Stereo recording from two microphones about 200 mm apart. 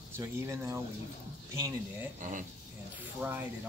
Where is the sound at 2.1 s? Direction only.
40° right (ahead or behind).